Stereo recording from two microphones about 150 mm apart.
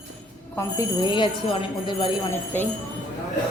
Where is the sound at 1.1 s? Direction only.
30° left (ahead or behind).